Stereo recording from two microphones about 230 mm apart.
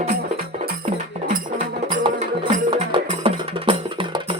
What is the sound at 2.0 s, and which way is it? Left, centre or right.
Music, right.